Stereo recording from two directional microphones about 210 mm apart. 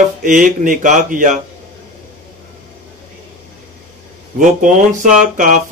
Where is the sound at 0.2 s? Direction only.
40° right (ahead or behind).